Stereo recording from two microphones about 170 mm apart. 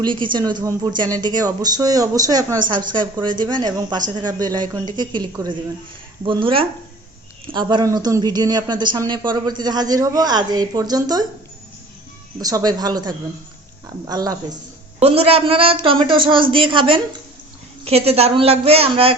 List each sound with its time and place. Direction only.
0.0 s a woman's voice: 30° right (ahead or behind)
12.4 s a woman's voice: 20° right (ahead or behind)
15.0 s speech: 35° right (ahead or behind)